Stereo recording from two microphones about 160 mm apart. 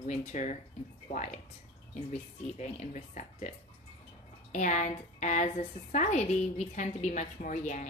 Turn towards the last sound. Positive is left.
turn(degrees=50)  # may be behind; listen again after turning